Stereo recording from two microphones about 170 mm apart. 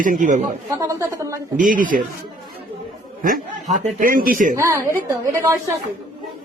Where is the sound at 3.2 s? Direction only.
50° right (ahead or behind).